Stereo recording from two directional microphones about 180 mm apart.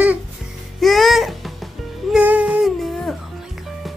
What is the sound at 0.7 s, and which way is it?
Music, centre (ahead or behind).